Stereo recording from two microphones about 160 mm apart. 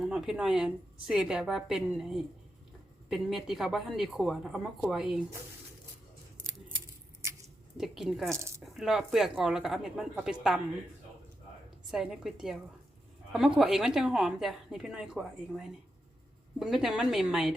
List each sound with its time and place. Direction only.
0.0 s a woman's voice: 5° right (ahead or behind)
6.4 s scissors: 15° right (ahead or behind)
7.8 s a woman's voice: centre (ahead or behind)
11.9 s a woman's voice: 5° right (ahead or behind)